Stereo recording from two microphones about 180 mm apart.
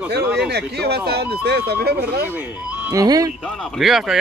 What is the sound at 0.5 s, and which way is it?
Speech, 65° right (ahead or behind).